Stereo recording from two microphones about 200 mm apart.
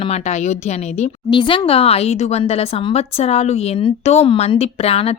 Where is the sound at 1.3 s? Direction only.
25° left (ahead or behind).